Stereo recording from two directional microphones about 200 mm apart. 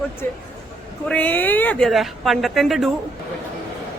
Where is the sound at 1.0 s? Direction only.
5° left (ahead or behind).